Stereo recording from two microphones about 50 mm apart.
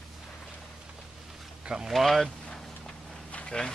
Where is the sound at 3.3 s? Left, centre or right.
Left.